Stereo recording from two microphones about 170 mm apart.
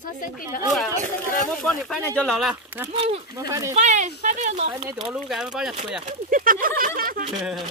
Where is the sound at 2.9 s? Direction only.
35° right (ahead or behind).